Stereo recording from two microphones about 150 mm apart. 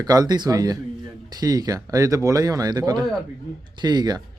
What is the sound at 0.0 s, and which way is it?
Speech, 25° right (ahead or behind).